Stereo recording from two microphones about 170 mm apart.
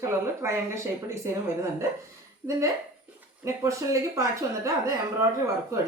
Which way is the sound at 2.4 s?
25° right (ahead or behind).